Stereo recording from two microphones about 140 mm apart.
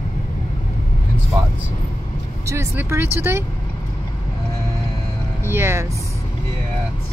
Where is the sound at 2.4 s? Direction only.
20° right (ahead or behind).